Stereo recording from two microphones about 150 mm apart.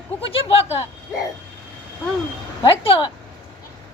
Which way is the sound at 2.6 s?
35° left (ahead or behind).